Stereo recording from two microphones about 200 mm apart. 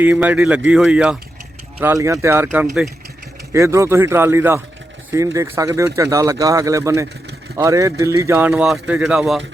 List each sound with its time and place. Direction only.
0.0 s speech: 10° right (ahead or behind)
1.8 s speech: 15° right (ahead or behind)